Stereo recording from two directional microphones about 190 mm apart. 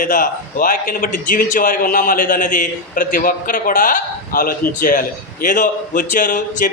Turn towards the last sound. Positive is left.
turn(degrees=45)  # may be behind; listen again after turning